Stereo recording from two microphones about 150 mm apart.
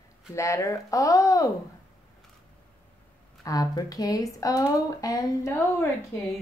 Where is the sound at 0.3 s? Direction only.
20° left (ahead or behind).